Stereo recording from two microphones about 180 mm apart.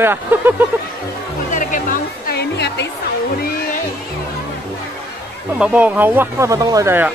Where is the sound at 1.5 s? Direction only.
45° left (ahead or behind); by 2.8 s 65° left (ahead or behind).